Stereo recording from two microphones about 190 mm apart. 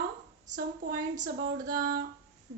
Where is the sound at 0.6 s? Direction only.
50° right (ahead or behind).